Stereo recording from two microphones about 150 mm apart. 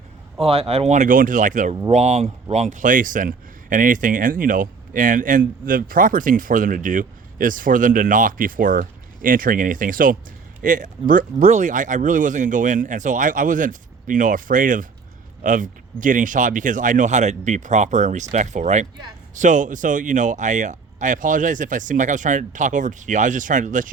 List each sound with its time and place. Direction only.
0.3 s speech: 40° right (ahead or behind); by 1.7 s 60° right (ahead or behind)
1.9 s speech: 45° right (ahead or behind)
2.6 s speech: 60° right (ahead or behind)